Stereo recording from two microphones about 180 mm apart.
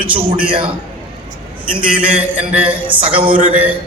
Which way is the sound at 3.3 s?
50° right (ahead or behind).